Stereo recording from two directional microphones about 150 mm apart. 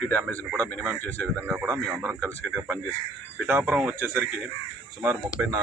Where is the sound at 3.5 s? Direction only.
10° right (ahead or behind).